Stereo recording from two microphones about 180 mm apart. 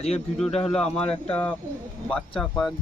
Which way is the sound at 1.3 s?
10° left (ahead or behind).